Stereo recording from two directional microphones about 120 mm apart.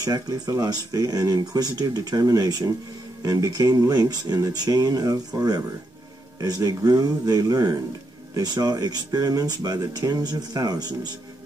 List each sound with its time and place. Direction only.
0.0 s speech: 30° right (ahead or behind)
6.4 s speech: 30° right (ahead or behind)